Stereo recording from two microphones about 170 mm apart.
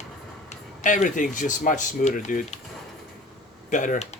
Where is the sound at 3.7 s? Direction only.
50° left (ahead or behind).